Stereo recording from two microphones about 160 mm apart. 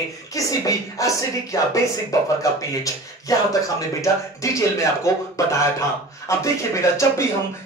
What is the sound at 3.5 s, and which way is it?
Speech, 20° left (ahead or behind).